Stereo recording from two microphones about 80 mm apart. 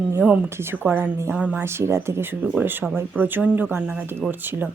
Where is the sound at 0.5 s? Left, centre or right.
Right.